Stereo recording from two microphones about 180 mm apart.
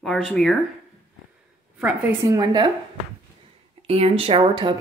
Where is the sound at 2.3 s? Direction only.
20° right (ahead or behind).